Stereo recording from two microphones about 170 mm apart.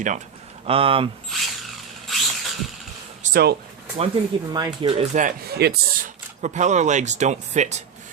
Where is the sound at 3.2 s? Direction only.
60° right (ahead or behind).